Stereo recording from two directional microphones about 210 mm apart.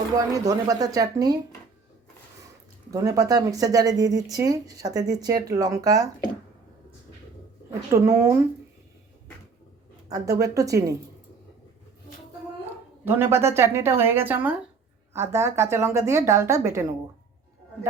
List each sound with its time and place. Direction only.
0.3 s speech: 15° right (ahead or behind)
2.9 s speech: 15° right (ahead or behind)
7.7 s speech: 15° right (ahead or behind)
10.1 s speech: 15° right (ahead or behind)
13.1 s speech: 10° right (ahead or behind)